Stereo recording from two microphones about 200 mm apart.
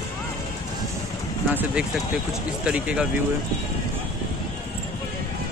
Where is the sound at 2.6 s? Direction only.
5° right (ahead or behind).